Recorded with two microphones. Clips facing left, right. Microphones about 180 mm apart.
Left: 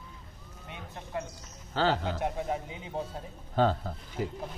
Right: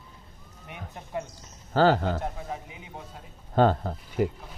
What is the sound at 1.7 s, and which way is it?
Speech, 45° right (ahead or behind).